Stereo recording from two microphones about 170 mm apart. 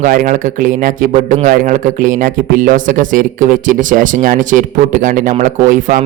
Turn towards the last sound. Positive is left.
turn(degrees=-50)  # may be behind; listen again after turning